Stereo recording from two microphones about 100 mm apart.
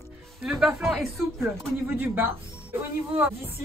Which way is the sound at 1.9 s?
20° right (ahead or behind).